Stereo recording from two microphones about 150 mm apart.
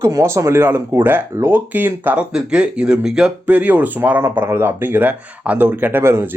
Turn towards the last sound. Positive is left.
turn(degrees=-15)  # may be behind; listen again after turning